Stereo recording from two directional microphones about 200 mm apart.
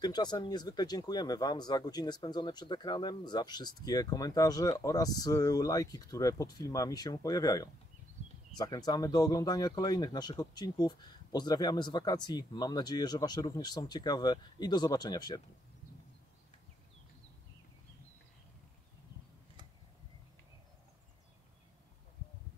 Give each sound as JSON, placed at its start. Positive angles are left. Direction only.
{"t": 0.0, "sound": "speech", "side_deg": 20}